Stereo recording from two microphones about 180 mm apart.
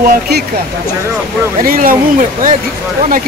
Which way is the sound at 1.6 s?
50° right (ahead or behind).